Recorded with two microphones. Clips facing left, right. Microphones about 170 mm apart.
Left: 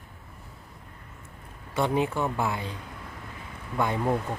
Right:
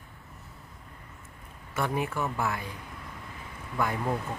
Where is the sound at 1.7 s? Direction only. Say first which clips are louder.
Left 4 dB; 20° left (ahead or behind).